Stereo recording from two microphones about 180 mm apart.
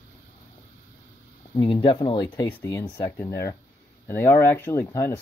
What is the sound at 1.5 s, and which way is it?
Speech, 25° left (ahead or behind).